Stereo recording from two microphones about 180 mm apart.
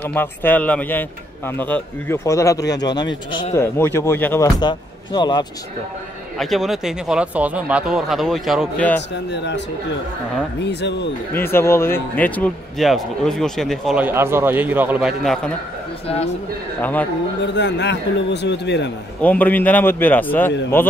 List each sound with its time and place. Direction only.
0.0 s a man's voice: 10° left (ahead or behind)
4.6 s speech: 25° left (ahead or behind)
6.3 s speech: centre (ahead or behind)
9.1 s a man's voice: 75° left (ahead or behind)
10.6 s a man's voice: 70° left (ahead or behind)
11.3 s speech: 15° left (ahead or behind)
14.0 s a man's voice: 15° right (ahead or behind)
16.8 s speech: 10° left (ahead or behind)
17.4 s a man's voice: 75° left (ahead or behind)
19.2 s speech: 10° left (ahead or behind)